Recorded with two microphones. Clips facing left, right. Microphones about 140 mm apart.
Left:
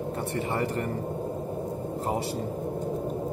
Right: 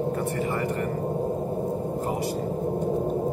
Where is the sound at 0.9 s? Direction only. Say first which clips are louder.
Right 4 dB; 30° right (ahead or behind).